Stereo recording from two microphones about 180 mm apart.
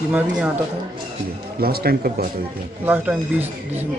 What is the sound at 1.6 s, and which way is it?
Speech, 60° right (ahead or behind).